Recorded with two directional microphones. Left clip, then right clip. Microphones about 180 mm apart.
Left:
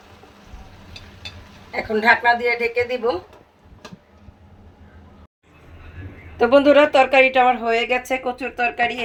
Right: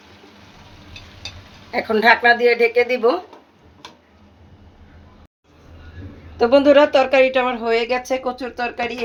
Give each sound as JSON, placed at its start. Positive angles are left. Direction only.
{"t": 1.7, "sound": "a woman's voice", "side_deg": -70}
{"t": 6.3, "sound": "speech", "side_deg": 0}